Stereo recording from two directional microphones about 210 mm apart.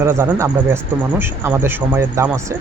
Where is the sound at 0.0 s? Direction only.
15° right (ahead or behind).